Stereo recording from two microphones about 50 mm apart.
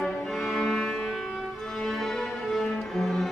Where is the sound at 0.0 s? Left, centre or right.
Centre.